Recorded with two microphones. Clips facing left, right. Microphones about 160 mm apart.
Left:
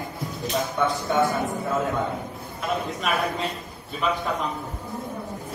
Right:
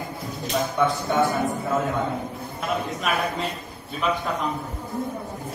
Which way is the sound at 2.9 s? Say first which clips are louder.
Even; centre (ahead or behind).